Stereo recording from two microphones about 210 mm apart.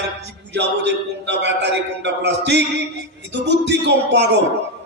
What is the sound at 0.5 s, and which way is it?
Male singing, 55° right (ahead or behind).